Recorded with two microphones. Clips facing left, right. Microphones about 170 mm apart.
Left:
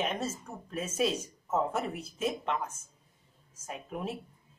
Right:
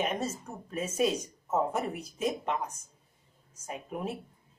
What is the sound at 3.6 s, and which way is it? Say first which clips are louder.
Speech: right 1 dB; 5° right (ahead or behind).